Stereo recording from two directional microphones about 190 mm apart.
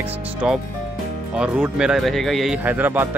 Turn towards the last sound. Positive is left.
turn(degrees=-10)  # may be behind; listen again after turning